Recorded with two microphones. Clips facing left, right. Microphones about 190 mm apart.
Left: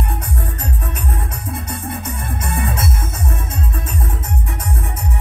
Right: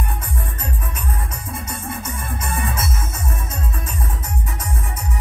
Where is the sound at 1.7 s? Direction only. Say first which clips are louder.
Left 3 dB; 60° left (ahead or behind).